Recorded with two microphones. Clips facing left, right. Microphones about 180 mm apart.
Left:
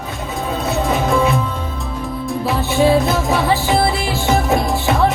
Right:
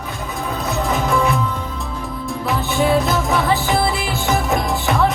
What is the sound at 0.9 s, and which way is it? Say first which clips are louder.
Music: left 2 dB; 20° left (ahead or behind).